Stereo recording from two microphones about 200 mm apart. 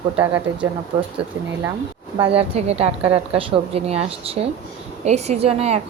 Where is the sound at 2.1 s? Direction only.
30° right (ahead or behind).